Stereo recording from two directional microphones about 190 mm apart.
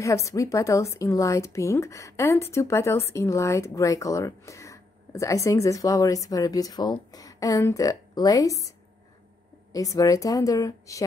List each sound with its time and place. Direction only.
0.0 s speech: 15° left (ahead or behind)